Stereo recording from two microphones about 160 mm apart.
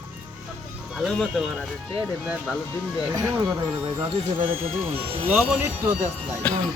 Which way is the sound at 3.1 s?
20° right (ahead or behind).